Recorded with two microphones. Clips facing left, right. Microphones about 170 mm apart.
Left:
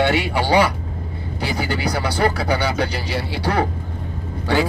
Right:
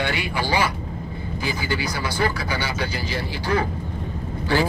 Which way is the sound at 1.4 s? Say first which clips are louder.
Left 4 dB; 65° left (ahead or behind).